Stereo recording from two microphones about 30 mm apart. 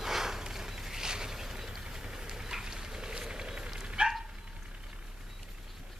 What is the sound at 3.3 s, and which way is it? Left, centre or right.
Run, right.